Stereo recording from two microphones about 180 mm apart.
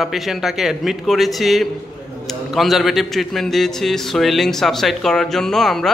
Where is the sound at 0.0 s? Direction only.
Centre (ahead or behind).